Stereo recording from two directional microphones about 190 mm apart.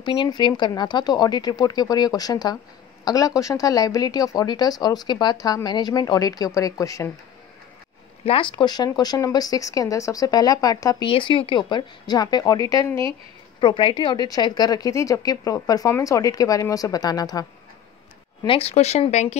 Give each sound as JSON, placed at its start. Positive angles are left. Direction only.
{"t": 0.0, "sound": "speech", "side_deg": 25}
{"t": 8.3, "sound": "speech", "side_deg": 25}